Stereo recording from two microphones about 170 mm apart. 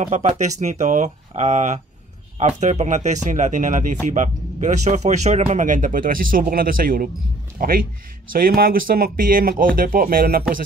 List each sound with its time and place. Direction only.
0.0 s speech: 45° right (ahead or behind)